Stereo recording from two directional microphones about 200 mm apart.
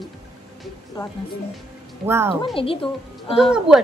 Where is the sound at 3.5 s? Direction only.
5° right (ahead or behind).